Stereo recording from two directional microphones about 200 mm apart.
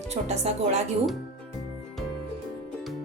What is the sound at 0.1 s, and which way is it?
Speech, 35° right (ahead or behind).